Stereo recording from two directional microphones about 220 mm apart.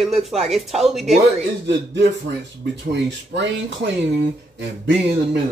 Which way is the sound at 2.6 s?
50° right (ahead or behind).